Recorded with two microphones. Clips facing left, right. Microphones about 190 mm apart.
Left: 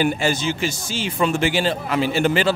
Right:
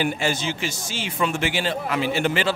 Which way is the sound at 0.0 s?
40° left (ahead or behind).